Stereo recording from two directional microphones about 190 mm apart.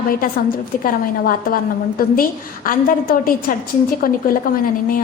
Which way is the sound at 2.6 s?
50° left (ahead or behind).